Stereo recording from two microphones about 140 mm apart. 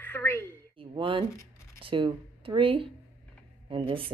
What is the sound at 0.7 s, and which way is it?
Speech, 35° right (ahead or behind).